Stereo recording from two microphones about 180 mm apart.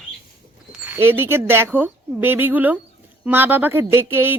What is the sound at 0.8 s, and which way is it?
Speech, 10° right (ahead or behind).